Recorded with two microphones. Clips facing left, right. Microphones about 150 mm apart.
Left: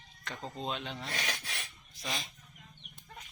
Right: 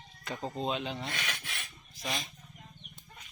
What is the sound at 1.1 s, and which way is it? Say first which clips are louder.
Filing: left 1 dB; 40° left (ahead or behind).